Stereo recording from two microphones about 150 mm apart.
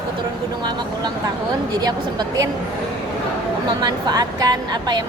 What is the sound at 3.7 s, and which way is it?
A woman's voice, 25° right (ahead or behind).